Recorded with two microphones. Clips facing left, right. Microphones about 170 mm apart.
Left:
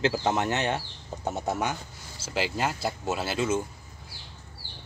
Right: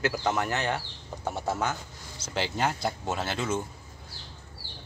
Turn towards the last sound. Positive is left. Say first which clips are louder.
# left 3 dB
turn(degrees=10)  # may be behind; listen again after turning